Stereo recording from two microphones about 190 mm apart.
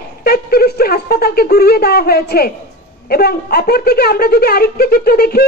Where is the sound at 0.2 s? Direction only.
55° left (ahead or behind).